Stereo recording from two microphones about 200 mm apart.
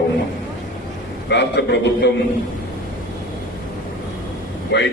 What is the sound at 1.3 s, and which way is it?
Speech, 60° left (ahead or behind).